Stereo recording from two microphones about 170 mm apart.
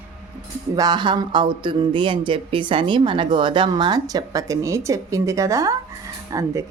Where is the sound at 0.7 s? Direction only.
25° right (ahead or behind).